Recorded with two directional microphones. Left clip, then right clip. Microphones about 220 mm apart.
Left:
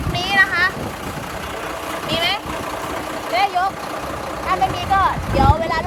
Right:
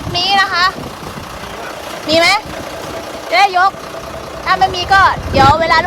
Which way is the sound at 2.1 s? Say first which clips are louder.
Right 10 dB; 25° right (ahead or behind).